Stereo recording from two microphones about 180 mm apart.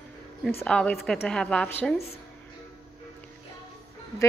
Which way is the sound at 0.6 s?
5° left (ahead or behind).